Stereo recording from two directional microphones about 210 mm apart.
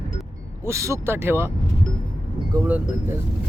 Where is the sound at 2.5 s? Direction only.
10° right (ahead or behind).